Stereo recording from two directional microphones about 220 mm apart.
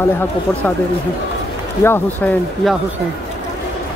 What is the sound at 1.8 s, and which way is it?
Speech, 10° left (ahead or behind).